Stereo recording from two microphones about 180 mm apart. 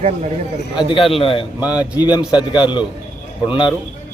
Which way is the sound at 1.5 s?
5° right (ahead or behind).